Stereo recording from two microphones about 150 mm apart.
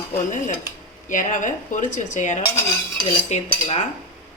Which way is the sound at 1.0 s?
60° left (ahead or behind).